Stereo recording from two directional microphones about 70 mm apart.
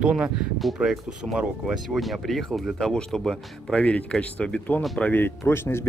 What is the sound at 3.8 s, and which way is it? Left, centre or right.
Speech, centre.